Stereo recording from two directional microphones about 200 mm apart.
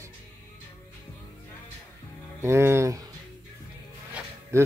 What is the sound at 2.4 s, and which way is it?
Speech, 15° right (ahead or behind).